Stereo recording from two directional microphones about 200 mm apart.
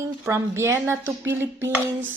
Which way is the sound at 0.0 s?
15° right (ahead or behind).